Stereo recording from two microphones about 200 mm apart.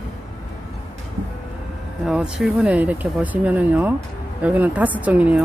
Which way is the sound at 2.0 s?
5° right (ahead or behind).